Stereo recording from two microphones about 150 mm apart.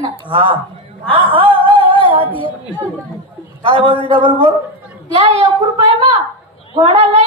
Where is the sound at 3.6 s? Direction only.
35° right (ahead or behind).